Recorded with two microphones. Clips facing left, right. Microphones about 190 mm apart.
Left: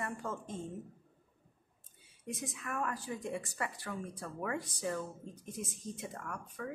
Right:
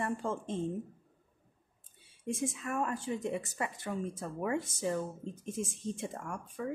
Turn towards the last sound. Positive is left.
turn(degrees=-30)  # may be behind; listen again after turning